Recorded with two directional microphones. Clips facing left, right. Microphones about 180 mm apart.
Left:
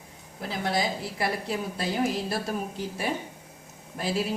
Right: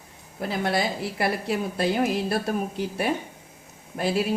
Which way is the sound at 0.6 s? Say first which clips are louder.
Right 2 dB; 60° right (ahead or behind).